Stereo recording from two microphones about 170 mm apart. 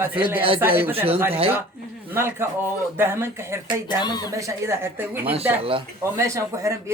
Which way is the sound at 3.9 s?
25° left (ahead or behind).